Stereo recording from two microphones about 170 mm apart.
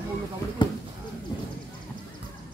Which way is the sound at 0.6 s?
25° left (ahead or behind).